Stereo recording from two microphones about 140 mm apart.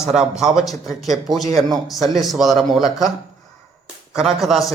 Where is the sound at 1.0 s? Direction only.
Centre (ahead or behind).